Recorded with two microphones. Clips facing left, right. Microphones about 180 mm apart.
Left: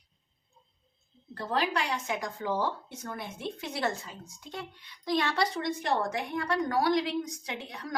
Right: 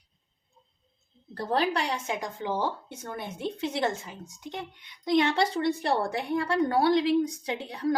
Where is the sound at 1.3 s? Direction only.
35° right (ahead or behind).